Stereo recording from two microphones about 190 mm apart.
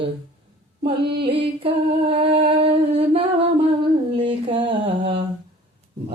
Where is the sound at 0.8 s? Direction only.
30° right (ahead or behind).